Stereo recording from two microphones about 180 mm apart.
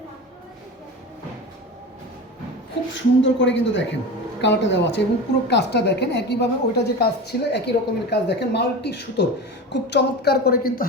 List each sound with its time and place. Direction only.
2.9 s speech: 90° left
4.4 s a woman's voice: 80° left; by 10.8 s 55° left (ahead or behind)